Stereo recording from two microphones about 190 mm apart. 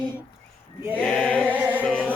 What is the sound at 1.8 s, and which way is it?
Music, 5° left (ahead or behind).